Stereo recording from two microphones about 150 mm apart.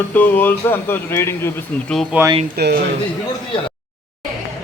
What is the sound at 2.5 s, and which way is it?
Speech, 90° right.